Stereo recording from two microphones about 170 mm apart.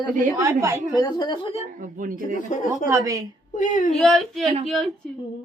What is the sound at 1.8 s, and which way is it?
Speech, 55° right (ahead or behind).